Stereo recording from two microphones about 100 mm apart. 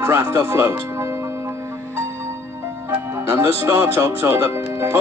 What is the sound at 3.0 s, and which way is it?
Speech, 25° right (ahead or behind).